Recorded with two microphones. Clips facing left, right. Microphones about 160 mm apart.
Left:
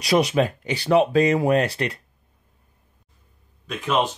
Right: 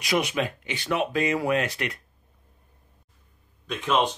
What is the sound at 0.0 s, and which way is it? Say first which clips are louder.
Speech: left 6 dB; 35° left (ahead or behind).